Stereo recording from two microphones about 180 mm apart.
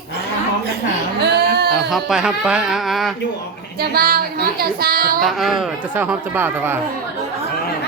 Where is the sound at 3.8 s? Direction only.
60° right (ahead or behind).